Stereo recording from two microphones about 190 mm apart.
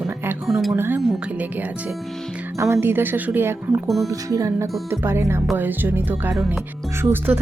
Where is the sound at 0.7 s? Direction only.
10° right (ahead or behind).